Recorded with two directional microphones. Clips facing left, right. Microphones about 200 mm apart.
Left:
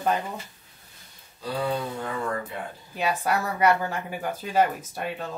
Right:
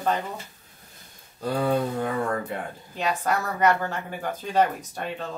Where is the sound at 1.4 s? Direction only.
50° right (ahead or behind).